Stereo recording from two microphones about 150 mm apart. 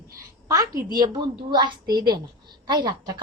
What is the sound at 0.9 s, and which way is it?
A woman's voice, 25° right (ahead or behind).